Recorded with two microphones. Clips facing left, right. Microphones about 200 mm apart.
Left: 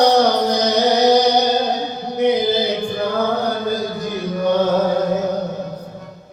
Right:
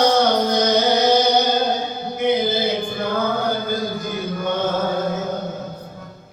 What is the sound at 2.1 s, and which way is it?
Chant, 35° left (ahead or behind).